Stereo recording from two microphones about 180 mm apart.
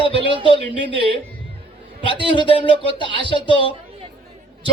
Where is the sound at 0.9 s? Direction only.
30° right (ahead or behind).